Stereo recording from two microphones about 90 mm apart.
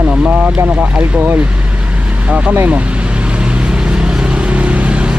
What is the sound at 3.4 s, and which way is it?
Vehicle, 10° right (ahead or behind).